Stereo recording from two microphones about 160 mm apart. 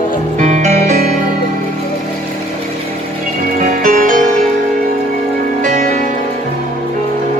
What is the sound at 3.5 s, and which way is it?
Music, 55° right (ahead or behind).